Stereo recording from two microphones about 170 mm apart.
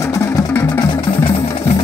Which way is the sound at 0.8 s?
30° left (ahead or behind).